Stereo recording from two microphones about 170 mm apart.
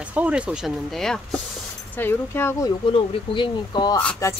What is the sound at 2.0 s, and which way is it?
Speech, 15° left (ahead or behind).